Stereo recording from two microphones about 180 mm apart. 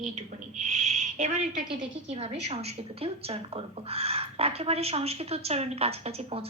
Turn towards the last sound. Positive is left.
turn(degrees=-35)  # may be behind; listen again after turning